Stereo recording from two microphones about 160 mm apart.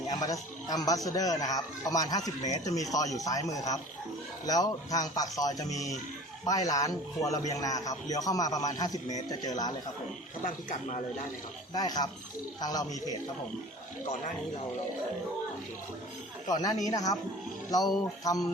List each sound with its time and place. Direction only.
0.1 s a man's voice: 25° left (ahead or behind)
10.4 s speech: 50° left (ahead or behind)
11.7 s a man's voice: 25° left (ahead or behind)
16.5 s a man's voice: 25° left (ahead or behind)